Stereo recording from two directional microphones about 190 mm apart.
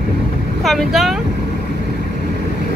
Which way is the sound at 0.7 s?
Centre (ahead or behind).